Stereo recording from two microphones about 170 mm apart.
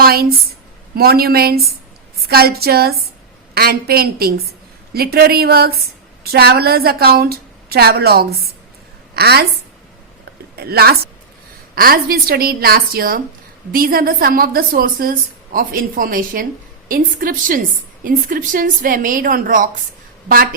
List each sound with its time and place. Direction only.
0.0 s a woman's voice: 65° right (ahead or behind)
10.6 s a woman's voice: 65° right (ahead or behind)